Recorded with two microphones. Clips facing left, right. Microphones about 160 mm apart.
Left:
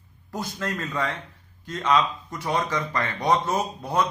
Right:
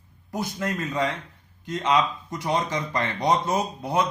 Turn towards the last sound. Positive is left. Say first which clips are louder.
# right 1 dB
turn(degrees=-15)  # may be behind; listen again after turning